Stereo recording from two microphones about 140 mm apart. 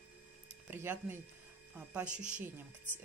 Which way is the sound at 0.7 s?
15° right (ahead or behind).